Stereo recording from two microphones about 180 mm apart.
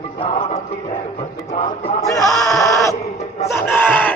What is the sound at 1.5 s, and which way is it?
Speech, 35° left (ahead or behind).